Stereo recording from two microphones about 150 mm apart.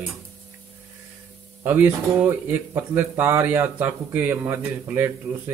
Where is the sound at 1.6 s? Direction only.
10° right (ahead or behind).